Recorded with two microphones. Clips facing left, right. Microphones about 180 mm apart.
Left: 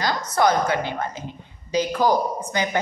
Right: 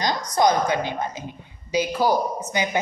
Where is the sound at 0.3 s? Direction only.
15° right (ahead or behind).